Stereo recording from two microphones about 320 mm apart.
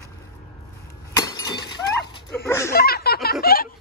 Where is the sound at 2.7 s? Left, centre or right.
Left.